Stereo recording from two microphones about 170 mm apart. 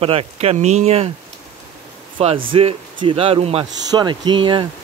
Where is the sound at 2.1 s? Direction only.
30° right (ahead or behind).